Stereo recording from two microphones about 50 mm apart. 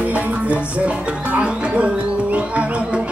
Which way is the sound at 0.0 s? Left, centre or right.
Right.